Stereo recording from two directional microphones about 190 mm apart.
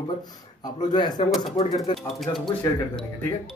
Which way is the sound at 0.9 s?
25° left (ahead or behind).